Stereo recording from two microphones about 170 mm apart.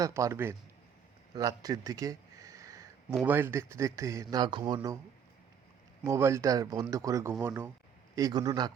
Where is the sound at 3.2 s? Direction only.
10° right (ahead or behind).